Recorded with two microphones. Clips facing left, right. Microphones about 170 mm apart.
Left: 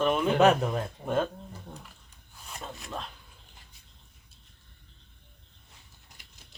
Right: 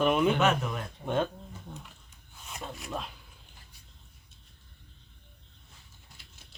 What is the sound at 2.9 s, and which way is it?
Speech, 5° right (ahead or behind).